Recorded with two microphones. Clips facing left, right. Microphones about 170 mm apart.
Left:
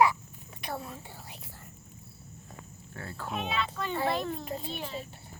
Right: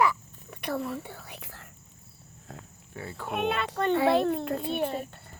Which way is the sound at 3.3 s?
60° right (ahead or behind).